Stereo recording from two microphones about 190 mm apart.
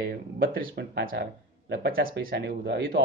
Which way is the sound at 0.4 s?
55° right (ahead or behind).